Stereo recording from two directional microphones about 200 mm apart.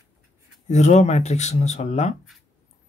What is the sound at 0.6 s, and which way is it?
Speech, 35° left (ahead or behind).